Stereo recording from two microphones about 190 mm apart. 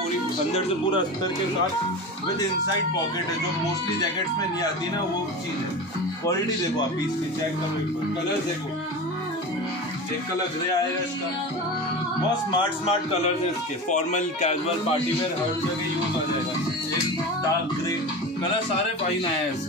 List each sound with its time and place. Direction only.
0.6 s speech: 25° left (ahead or behind)
12.4 s speech: 30° left (ahead or behind)
13.8 s speech: 40° left (ahead or behind)